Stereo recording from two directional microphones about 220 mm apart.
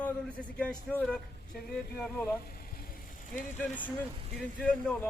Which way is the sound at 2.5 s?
40° left (ahead or behind).